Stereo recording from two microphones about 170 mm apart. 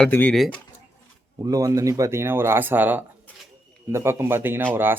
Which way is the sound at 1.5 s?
20° right (ahead or behind).